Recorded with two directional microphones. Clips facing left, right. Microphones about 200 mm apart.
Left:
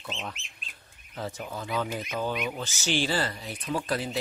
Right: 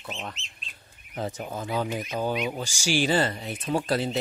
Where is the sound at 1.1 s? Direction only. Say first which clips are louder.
Right 3 dB; 20° right (ahead or behind).